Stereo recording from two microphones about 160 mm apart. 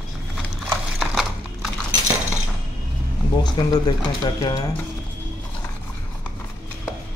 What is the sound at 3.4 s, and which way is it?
Speech, 25° left (ahead or behind).